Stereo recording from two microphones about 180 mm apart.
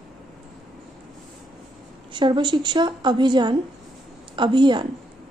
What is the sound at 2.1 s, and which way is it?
A woman's voice, 25° right (ahead or behind).